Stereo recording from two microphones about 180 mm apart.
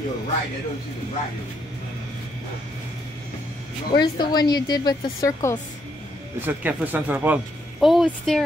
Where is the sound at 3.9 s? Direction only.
25° left (ahead or behind).